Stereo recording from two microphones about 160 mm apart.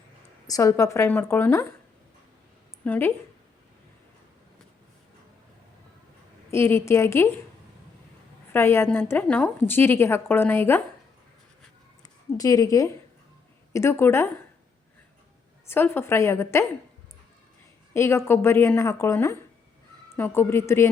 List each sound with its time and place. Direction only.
0.4 s a woman's voice: 20° left (ahead or behind)
2.8 s a woman's voice: 10° left (ahead or behind)
6.5 s a woman's voice: 15° left (ahead or behind)
8.5 s a woman's voice: 15° left (ahead or behind)
12.0 s a woman's voice: 20° left (ahead or behind)
15.6 s a woman's voice: 15° left (ahead or behind)
17.9 s a woman's voice: 15° left (ahead or behind)